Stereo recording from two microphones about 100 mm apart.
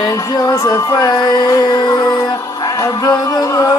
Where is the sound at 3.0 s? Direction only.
35° left (ahead or behind).